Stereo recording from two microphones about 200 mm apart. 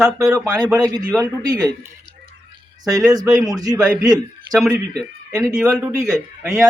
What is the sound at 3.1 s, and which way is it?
Speech, 15° right (ahead or behind).